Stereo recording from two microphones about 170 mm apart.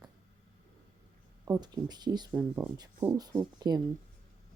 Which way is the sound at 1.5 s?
20° right (ahead or behind).